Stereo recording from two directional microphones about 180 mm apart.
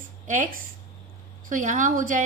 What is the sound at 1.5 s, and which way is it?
Speech, 45° right (ahead or behind).